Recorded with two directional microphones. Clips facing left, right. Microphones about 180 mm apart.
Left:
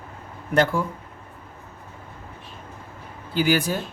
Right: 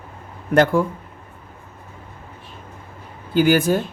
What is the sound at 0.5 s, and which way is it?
Speech, 50° right (ahead or behind).